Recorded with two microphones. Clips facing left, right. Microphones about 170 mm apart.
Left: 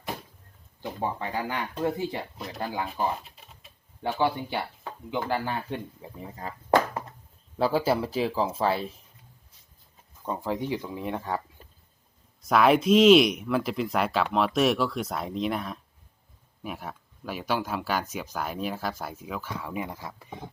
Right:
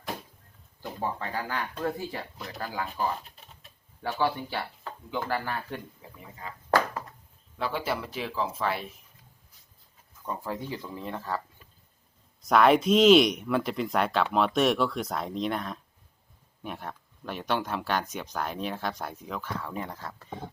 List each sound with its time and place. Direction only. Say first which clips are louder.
0.8 s speech: left 2 dB; 20° left (ahead or behind)
2.9 s a sound: left 2 dB; 5° left (ahead or behind)
4.2 s speech: left 1 dB; 20° left (ahead or behind)
6.1 s speech: left 5 dB; 35° left (ahead or behind)
6.7 s a sound: left 3 dB; 20° left (ahead or behind)
7.6 s speech: left 7 dB; 35° left (ahead or behind)
10.2 s speech: left 5 dB; 20° left (ahead or behind)
12.4 s speech: even; centre (ahead or behind)